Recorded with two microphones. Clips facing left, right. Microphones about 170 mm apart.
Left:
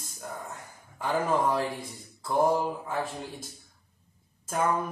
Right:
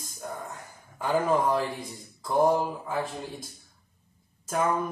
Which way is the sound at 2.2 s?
Centre (ahead or behind).